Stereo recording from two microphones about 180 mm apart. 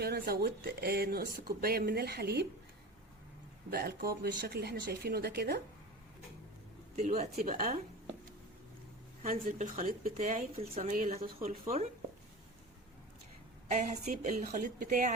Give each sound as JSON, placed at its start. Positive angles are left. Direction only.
{"t": 0.0, "sound": "speech", "side_deg": -60}
{"t": 3.7, "sound": "speech", "side_deg": -60}
{"t": 6.9, "sound": "speech", "side_deg": -40}
{"t": 7.3, "sound": "speech", "side_deg": -50}
{"t": 9.2, "sound": "speech", "side_deg": -50}
{"t": 11.4, "sound": "speech", "side_deg": -35}
{"t": 13.7, "sound": "speech", "side_deg": -40}